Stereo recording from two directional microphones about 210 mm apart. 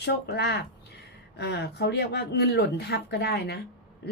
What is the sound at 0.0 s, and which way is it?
A woman's voice, 50° left (ahead or behind).